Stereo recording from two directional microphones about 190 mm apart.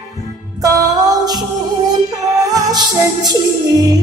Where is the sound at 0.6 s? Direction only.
20° right (ahead or behind).